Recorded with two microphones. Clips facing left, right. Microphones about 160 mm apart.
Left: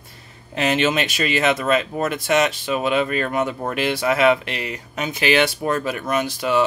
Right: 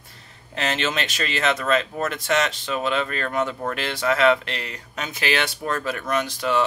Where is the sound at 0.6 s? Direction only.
10° left (ahead or behind).